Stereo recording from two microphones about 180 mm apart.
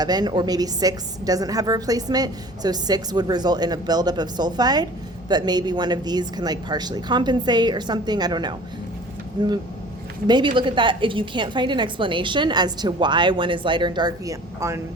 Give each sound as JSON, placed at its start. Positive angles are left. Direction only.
{"t": 0.0, "sound": "a woman's voice", "side_deg": -25}